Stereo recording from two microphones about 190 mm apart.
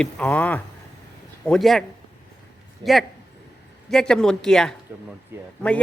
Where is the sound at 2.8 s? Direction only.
25° right (ahead or behind).